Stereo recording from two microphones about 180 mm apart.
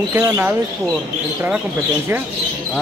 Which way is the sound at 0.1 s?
10° right (ahead or behind).